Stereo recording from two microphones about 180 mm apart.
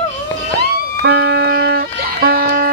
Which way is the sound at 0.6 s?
65° right (ahead or behind).